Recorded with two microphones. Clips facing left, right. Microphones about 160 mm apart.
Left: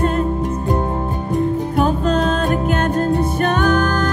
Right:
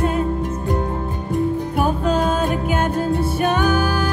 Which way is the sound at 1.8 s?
10° right (ahead or behind).